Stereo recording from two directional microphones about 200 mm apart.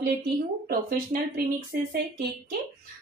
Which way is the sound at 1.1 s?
45° right (ahead or behind).